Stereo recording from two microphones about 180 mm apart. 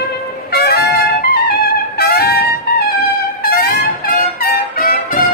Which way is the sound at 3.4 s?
55° left (ahead or behind).